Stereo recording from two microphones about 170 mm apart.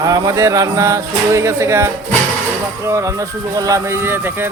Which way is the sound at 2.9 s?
15° right (ahead or behind).